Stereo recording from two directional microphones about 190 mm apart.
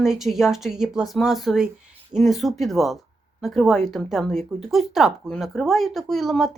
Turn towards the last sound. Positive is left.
turn(degrees=0)  # may be behind; listen again after turning